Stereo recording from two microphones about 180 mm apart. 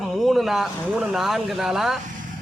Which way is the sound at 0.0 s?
Centre (ahead or behind).